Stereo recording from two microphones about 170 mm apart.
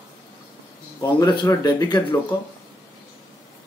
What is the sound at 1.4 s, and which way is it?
Speech, 25° left (ahead or behind).